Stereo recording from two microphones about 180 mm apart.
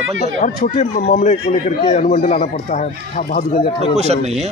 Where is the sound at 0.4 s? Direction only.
45° left (ahead or behind).